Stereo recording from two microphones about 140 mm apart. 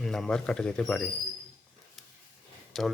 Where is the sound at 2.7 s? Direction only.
Centre (ahead or behind).